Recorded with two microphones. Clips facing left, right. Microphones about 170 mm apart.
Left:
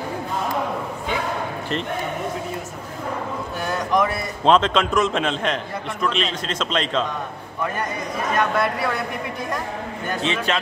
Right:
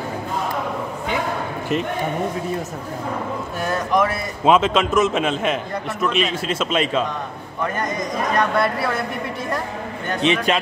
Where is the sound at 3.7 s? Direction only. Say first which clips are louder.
Right 1 dB; centre (ahead or behind).